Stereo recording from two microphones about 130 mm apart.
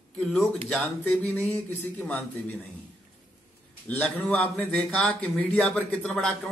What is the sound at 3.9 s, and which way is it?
Speech, 10° left (ahead or behind).